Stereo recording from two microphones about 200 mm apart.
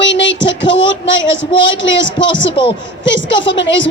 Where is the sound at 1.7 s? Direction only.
65° left (ahead or behind).